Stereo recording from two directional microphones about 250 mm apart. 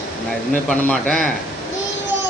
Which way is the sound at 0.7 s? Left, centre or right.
Centre.